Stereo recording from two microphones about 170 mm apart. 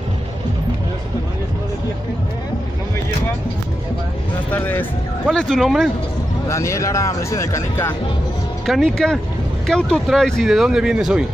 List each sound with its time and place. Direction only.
4.5 s speech: 10° left (ahead or behind)
6.5 s speech: 15° left (ahead or behind)
8.6 s speech: centre (ahead or behind)